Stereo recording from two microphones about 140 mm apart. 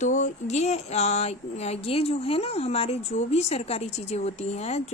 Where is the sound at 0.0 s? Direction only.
65° left (ahead or behind).